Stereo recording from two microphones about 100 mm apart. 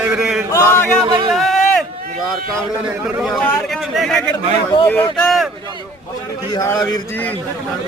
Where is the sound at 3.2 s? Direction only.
5° left (ahead or behind).